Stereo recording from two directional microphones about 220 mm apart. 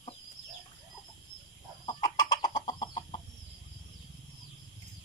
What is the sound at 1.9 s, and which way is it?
Chicken, 20° left (ahead or behind).